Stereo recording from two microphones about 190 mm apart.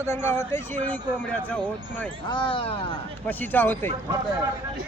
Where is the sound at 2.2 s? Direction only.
25° left (ahead or behind).